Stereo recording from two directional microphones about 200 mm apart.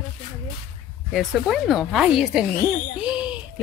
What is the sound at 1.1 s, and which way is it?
Speech, centre (ahead or behind).